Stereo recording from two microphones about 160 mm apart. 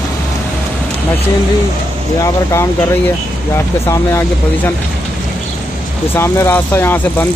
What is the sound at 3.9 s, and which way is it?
Speech, 15° left (ahead or behind).